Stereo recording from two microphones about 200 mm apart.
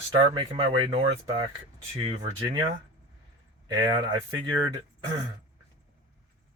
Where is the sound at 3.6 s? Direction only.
20° right (ahead or behind).